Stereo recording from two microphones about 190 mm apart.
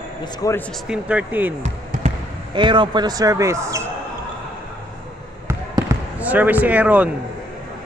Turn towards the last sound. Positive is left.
turn(degrees=-5)  # may be behind; listen again after turning